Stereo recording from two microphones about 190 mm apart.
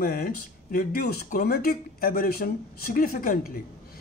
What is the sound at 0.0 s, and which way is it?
Speech, 50° left (ahead or behind).